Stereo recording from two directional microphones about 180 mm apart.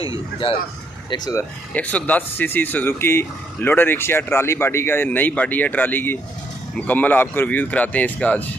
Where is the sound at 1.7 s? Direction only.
10° left (ahead or behind).